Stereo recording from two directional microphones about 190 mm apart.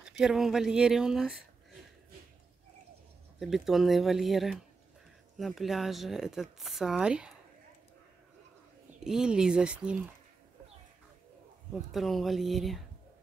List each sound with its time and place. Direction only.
0.2 s speech: centre (ahead or behind)
3.3 s speech: centre (ahead or behind)
9.0 s speech: 5° right (ahead or behind)
11.7 s speech: centre (ahead or behind)